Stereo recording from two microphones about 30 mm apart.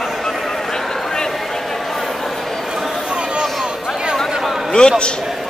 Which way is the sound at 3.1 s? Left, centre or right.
Right.